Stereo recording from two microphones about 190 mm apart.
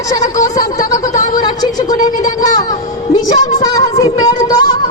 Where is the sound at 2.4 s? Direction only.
20° left (ahead or behind).